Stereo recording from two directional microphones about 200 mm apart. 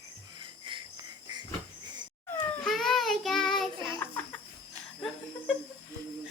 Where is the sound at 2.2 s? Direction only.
5° left (ahead or behind).